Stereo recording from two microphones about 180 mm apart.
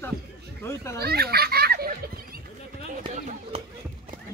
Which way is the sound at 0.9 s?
60° right (ahead or behind).